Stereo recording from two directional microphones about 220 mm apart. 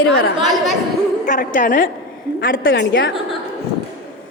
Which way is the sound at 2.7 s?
55° left (ahead or behind).